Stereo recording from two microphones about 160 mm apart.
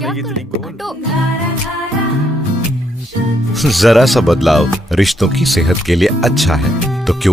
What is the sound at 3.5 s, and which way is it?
Speech, centre (ahead or behind).